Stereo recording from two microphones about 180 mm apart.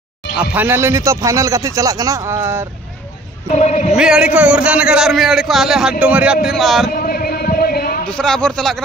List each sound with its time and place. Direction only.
0.4 s speech: 10° right (ahead or behind)
3.5 s speech: 40° left (ahead or behind)
3.9 s a man's voice: 5° right (ahead or behind)
6.9 s a sound: 55° left (ahead or behind)
8.1 s a man's voice: 5° left (ahead or behind)